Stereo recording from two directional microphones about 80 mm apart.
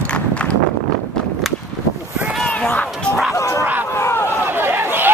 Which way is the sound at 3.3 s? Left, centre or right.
Left.